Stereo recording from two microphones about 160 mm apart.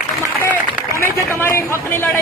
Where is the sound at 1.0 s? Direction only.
15° left (ahead or behind).